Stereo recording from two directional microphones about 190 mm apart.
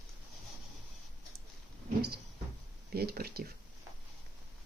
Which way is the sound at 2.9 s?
55° right (ahead or behind).